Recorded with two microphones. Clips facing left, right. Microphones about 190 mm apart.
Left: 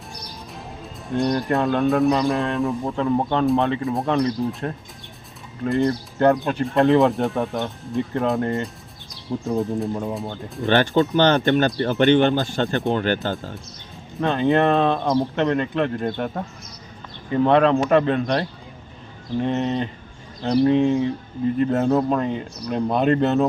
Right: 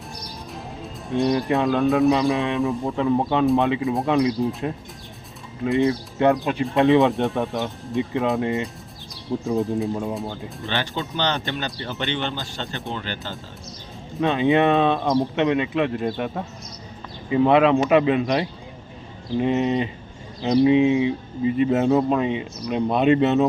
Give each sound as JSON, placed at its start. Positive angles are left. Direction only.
{"t": 0.2, "sound": "speech", "side_deg": 0}
{"t": 5.6, "sound": "speech", "side_deg": 0}
{"t": 10.7, "sound": "speech", "side_deg": 55}
{"t": 14.2, "sound": "speech", "side_deg": 0}